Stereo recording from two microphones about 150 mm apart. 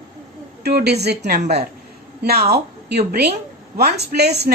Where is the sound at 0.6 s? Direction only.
90° right.